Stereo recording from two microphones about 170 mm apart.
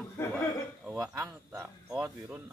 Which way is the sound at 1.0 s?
20° right (ahead or behind).